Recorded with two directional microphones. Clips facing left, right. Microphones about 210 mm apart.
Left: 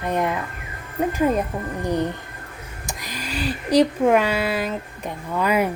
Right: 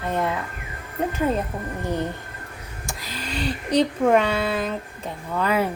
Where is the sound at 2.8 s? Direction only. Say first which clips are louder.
Left 1 dB; 15° left (ahead or behind).